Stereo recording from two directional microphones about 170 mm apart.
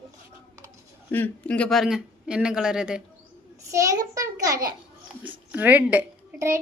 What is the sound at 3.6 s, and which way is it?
A child's voice, 20° right (ahead or behind).